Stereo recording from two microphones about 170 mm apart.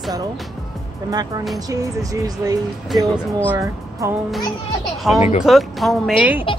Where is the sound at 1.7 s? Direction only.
20° right (ahead or behind).